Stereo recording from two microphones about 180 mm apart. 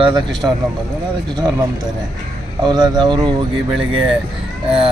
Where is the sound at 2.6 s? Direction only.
25° right (ahead or behind).